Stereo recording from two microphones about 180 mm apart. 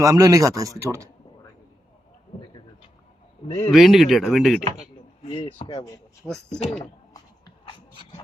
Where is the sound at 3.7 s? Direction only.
Centre (ahead or behind).